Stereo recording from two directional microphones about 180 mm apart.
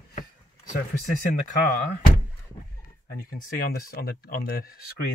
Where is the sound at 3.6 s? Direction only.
55° left (ahead or behind).